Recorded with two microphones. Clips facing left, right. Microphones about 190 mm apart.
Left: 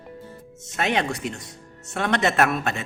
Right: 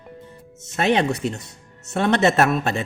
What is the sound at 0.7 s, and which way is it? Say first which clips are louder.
A man's voice: right 5 dB; 30° right (ahead or behind).